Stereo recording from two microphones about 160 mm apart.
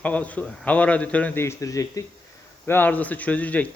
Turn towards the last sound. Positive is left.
turn(degrees=10)  # may be behind; listen again after turning